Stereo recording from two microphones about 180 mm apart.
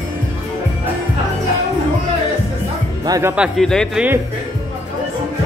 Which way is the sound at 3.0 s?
20° right (ahead or behind).